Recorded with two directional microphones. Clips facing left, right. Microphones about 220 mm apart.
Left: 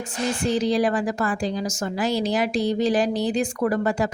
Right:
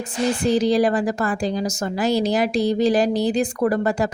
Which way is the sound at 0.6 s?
40° right (ahead or behind).